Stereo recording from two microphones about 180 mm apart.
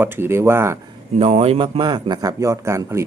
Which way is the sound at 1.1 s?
35° right (ahead or behind).